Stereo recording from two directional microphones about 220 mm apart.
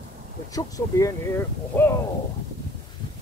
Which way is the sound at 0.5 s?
15° left (ahead or behind).